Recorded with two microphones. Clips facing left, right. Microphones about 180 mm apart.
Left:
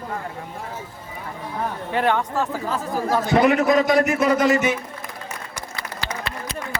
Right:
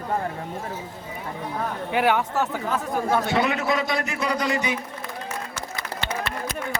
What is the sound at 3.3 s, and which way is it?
A man's voice, 40° left (ahead or behind).